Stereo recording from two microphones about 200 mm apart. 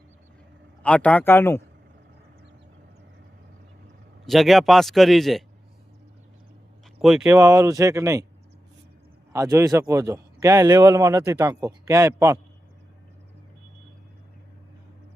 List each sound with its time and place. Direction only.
0.8 s a man's voice: 5° left (ahead or behind)
4.3 s speech: centre (ahead or behind)
7.0 s speech: centre (ahead or behind)
7.3 s a man's voice: 15° right (ahead or behind)
9.3 s a man's voice: 15° right (ahead or behind)